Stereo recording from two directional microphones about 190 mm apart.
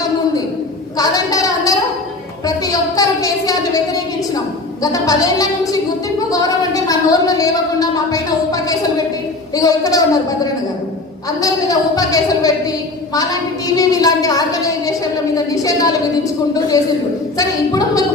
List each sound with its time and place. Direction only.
0.9 s a sound: 20° left (ahead or behind)
4.8 s a woman's voice: 20° left (ahead or behind)
13.7 s a woman's voice: 20° left (ahead or behind)
17.3 s a woman's voice: 20° left (ahead or behind)